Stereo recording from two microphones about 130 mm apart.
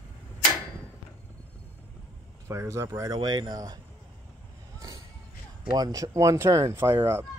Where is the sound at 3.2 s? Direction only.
35° right (ahead or behind).